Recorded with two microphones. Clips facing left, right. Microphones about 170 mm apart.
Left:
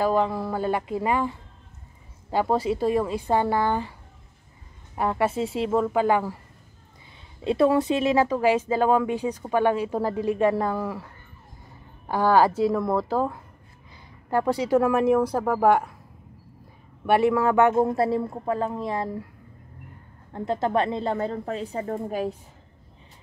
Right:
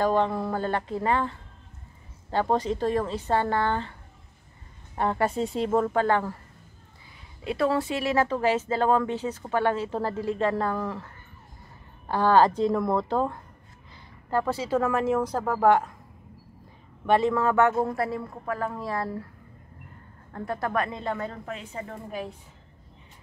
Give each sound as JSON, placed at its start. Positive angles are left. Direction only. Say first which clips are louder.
{"t": 0.0, "sound": "speech", "louder": "left 1 dB", "side_deg": 5}
{"t": 4.9, "sound": "speech", "louder": "left 1 dB", "side_deg": 5}
{"t": 7.4, "sound": "speech", "louder": "left 5 dB", "side_deg": 20}
{"t": 12.1, "sound": "speech", "louder": "left 1 dB", "side_deg": 10}
{"t": 14.3, "sound": "speech", "louder": "left 4 dB", "side_deg": 15}
{"t": 17.0, "sound": "a woman's voice", "louder": "left 2 dB", "side_deg": 10}
{"t": 20.3, "sound": "a woman's voice", "louder": "left 4 dB", "side_deg": 25}